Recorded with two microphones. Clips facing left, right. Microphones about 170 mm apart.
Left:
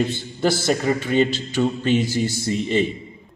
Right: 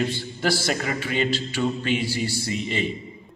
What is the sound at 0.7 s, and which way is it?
A man's voice, 45° left (ahead or behind).